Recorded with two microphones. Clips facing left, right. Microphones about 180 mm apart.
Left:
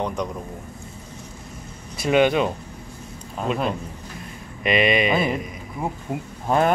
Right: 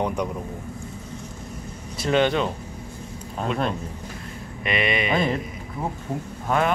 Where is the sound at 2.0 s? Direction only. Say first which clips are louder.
Left 3 dB; 10° left (ahead or behind).